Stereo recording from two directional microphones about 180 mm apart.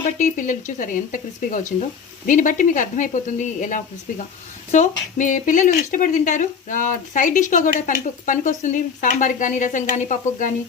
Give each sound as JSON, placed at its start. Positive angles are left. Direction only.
{"t": 0.2, "sound": "speech", "side_deg": 45}